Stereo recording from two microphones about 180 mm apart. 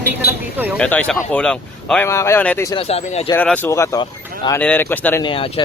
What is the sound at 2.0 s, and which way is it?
Speech, 15° left (ahead or behind).